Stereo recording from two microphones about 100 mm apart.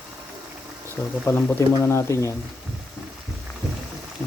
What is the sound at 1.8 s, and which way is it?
Speech, 30° left (ahead or behind).